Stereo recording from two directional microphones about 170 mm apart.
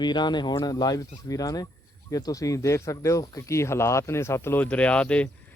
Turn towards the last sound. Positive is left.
turn(degrees=5)  # may be behind; listen again after turning